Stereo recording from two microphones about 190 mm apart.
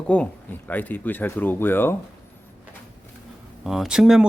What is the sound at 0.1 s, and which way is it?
Speech, 5° left (ahead or behind).